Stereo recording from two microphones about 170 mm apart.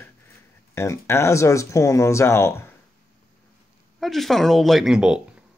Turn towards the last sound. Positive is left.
turn(degrees=-5)  # may be behind; listen again after turning